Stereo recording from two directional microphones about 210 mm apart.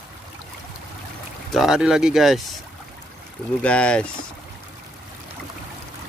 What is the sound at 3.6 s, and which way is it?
Speech, 5° left (ahead or behind).